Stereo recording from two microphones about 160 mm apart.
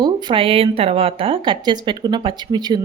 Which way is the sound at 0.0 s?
30° right (ahead or behind).